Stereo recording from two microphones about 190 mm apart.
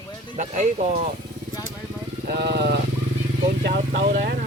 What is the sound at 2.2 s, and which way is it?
Speech, 55° right (ahead or behind).